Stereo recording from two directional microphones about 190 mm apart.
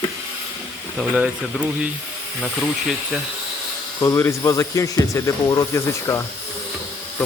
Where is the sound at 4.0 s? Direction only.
15° left (ahead or behind).